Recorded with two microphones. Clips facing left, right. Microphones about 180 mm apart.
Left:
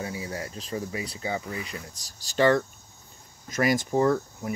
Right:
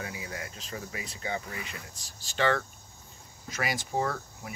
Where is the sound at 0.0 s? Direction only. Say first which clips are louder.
Left 5 dB; 30° left (ahead or behind).